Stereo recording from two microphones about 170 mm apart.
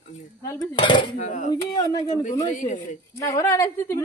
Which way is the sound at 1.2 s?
45° left (ahead or behind).